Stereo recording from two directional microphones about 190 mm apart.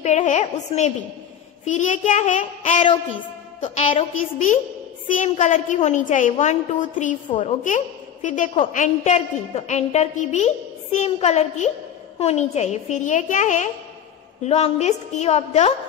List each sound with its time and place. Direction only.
0.0 s a woman's voice: 40° left (ahead or behind)
5.0 s a woman's voice: 40° left (ahead or behind)